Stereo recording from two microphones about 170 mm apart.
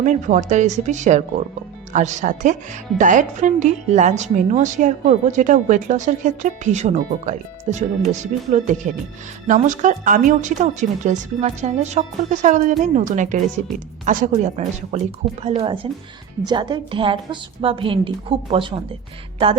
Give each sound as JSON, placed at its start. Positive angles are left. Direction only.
{"t": 0.0, "sound": "a woman's voice", "side_deg": -50}